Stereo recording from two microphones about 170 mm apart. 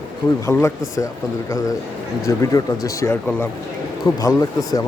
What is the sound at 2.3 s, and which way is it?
A man's voice, 20° left (ahead or behind).